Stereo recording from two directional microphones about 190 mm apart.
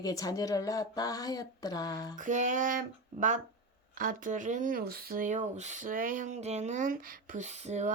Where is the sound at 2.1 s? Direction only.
40° right (ahead or behind).